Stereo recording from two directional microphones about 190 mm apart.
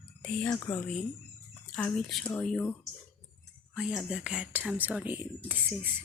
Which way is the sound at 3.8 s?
5° right (ahead or behind).